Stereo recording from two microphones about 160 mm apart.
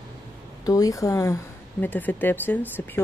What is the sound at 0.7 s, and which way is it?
Speech, 20° left (ahead or behind).